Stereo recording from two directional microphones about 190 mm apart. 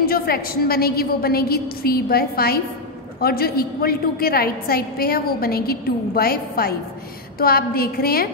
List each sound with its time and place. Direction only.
0.0 s a woman's voice: 50° left (ahead or behind)